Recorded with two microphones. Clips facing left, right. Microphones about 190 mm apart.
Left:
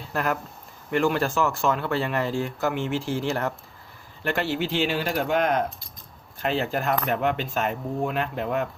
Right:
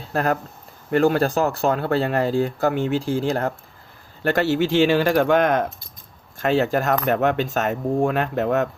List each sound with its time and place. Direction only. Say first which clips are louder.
0.1 s speech: right 5 dB; 35° right (ahead or behind)
4.2 s speech: right 6 dB; 45° right (ahead or behind)